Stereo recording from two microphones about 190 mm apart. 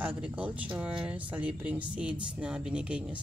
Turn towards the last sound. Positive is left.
turn(degrees=-5)  # may be behind; listen again after turning